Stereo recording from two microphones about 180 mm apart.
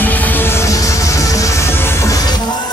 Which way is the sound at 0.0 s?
10° left (ahead or behind).